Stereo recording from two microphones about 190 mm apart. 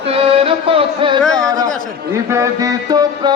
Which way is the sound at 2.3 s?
15° right (ahead or behind).